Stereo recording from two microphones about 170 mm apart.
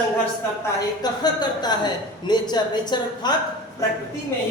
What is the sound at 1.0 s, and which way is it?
A woman's voice, 25° left (ahead or behind).